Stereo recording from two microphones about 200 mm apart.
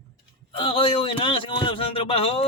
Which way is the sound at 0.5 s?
25° left (ahead or behind).